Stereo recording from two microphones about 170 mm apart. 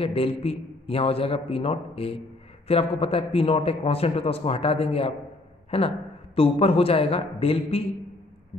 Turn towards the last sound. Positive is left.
turn(degrees=35)  # may be behind; listen again after turning